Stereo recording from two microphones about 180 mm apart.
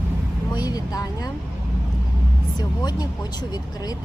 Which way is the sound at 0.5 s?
20° left (ahead or behind).